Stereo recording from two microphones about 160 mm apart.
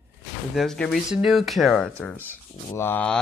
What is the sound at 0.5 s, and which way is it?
Speech, 5° left (ahead or behind).